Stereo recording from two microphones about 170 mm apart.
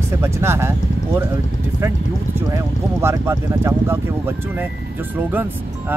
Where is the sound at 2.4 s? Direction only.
15° right (ahead or behind).